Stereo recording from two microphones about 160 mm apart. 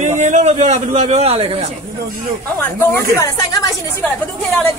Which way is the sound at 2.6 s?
15° left (ahead or behind).